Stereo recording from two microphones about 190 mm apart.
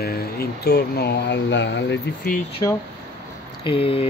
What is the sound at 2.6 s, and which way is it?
Speech, 20° left (ahead or behind).